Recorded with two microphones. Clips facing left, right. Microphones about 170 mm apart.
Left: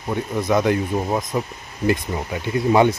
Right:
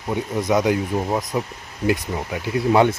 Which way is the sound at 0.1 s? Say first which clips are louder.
Even; 15° right (ahead or behind).